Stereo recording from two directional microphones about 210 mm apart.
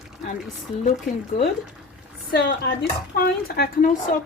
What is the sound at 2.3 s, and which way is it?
Speech, 55° left (ahead or behind).